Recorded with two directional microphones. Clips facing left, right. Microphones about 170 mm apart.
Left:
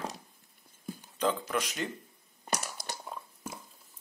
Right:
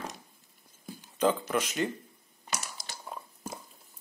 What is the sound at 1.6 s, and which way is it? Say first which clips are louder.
Speech: right 4 dB; centre (ahead or behind).